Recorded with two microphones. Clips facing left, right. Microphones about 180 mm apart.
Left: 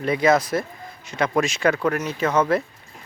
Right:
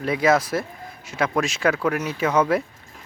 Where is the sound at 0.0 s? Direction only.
5° right (ahead or behind).